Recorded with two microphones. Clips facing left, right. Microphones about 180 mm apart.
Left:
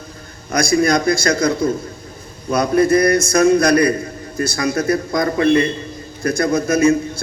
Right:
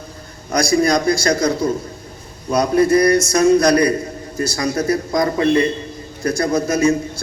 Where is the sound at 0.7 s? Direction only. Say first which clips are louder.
Even; 40° right (ahead or behind).